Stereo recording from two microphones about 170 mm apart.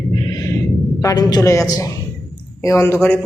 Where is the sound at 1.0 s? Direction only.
20° left (ahead or behind).